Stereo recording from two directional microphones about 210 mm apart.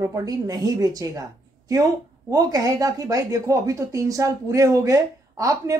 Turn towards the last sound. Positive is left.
turn(degrees=-15)  # may be behind; listen again after turning